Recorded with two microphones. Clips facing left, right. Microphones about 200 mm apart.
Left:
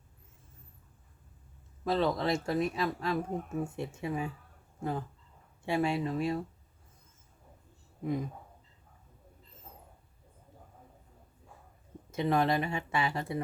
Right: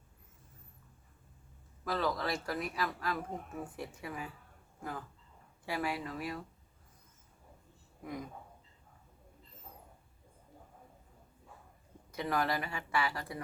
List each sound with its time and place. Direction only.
1.8 s speech: 25° left (ahead or behind)
12.1 s speech: 25° left (ahead or behind)